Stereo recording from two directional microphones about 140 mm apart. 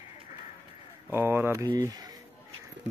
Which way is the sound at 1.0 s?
15° right (ahead or behind).